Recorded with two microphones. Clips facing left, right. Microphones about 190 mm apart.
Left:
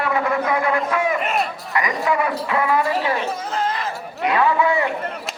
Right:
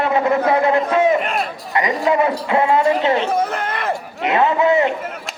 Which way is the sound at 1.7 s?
25° right (ahead or behind).